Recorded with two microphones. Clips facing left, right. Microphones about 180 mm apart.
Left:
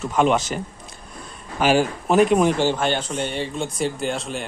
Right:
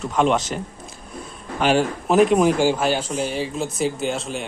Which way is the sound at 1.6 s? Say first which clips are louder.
Even; 5° left (ahead or behind).